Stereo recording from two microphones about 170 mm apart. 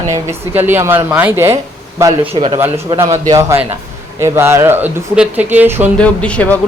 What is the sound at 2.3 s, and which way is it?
Speech, 35° right (ahead or behind).